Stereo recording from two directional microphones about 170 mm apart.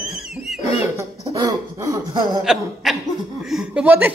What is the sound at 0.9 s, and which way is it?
Chuckle, 20° right (ahead or behind).